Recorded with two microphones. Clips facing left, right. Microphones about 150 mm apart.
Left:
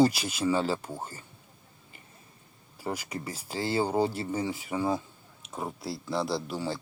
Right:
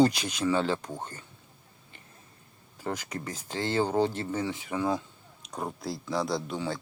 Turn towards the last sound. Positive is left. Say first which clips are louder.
# even
turn(degrees=5)  # may be behind; listen again after turning